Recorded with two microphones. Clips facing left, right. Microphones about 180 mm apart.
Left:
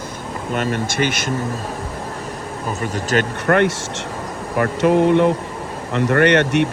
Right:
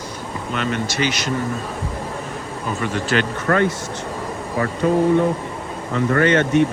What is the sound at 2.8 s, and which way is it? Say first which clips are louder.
Speech: left 1 dB; 40° left (ahead or behind).